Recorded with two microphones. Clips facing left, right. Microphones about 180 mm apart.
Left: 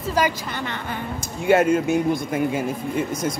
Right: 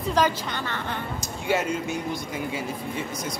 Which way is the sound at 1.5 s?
55° left (ahead or behind).